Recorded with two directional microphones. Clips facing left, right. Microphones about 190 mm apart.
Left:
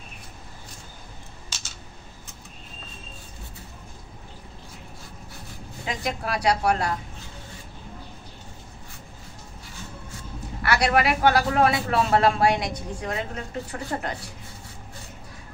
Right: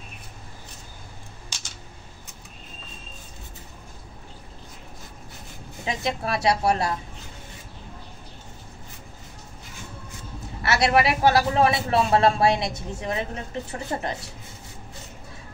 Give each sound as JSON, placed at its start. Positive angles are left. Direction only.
{"t": 1.5, "sound": "a sound", "side_deg": -15}
{"t": 5.9, "sound": "speech", "side_deg": -25}
{"t": 10.6, "sound": "speech", "side_deg": -25}